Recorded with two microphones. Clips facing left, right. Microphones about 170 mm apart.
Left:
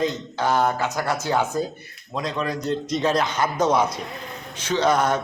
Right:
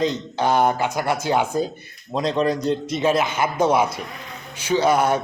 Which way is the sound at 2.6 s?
10° right (ahead or behind).